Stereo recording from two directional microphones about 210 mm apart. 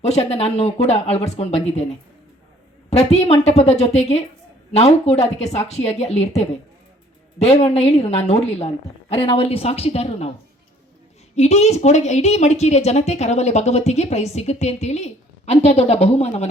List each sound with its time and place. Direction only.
0.0 s a woman's voice: 30° left (ahead or behind)
11.3 s a woman's voice: 30° left (ahead or behind)